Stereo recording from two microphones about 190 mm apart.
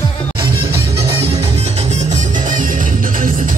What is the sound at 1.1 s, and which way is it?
Music, 30° right (ahead or behind).